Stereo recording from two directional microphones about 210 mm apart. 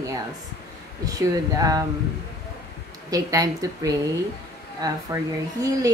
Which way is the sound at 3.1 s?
15° right (ahead or behind).